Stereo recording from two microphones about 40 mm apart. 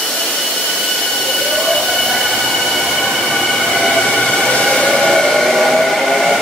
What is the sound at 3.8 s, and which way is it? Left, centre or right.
Train, centre.